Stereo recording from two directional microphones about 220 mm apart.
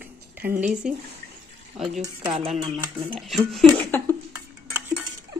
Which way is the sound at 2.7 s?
25° right (ahead or behind).